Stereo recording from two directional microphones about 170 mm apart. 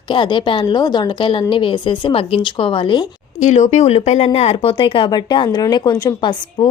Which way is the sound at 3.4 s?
45° left (ahead or behind).